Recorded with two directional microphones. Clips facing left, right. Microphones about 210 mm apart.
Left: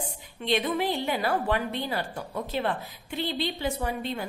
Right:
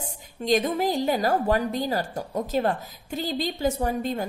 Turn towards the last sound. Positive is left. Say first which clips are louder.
# right 4 dB
turn(degrees=-45)  # may be behind; listen again after turning